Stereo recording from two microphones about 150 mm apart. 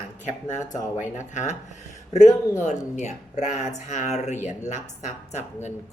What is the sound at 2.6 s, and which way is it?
Speech, 50° left (ahead or behind).